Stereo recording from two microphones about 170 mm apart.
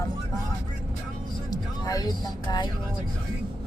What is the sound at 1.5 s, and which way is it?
Speech, 20° left (ahead or behind).